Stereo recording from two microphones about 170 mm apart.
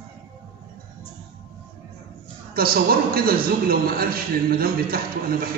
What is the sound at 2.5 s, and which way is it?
A man's voice, 60° right (ahead or behind).